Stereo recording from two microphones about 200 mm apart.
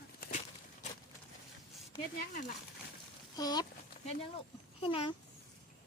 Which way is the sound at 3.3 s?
20° left (ahead or behind).